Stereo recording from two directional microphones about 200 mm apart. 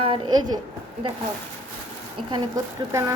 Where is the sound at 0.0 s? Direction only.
25° right (ahead or behind).